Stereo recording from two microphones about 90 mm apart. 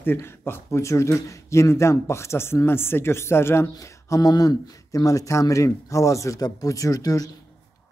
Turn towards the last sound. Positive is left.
turn(degrees=40)  # may be behind; listen again after turning